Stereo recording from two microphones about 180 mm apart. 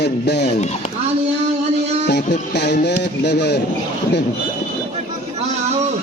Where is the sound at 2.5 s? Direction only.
70° left (ahead or behind).